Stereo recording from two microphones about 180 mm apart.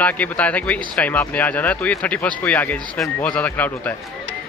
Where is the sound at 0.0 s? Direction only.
10° left (ahead or behind).